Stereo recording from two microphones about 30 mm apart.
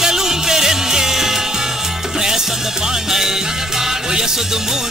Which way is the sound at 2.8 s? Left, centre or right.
Centre.